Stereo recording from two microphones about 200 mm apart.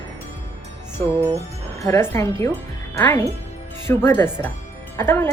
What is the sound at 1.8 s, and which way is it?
A woman's voice, 15° left (ahead or behind).